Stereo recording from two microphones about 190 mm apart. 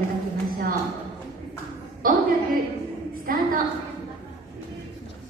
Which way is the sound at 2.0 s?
50° right (ahead or behind).